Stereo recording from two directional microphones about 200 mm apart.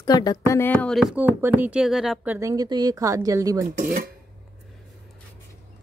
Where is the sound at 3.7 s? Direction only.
45° right (ahead or behind).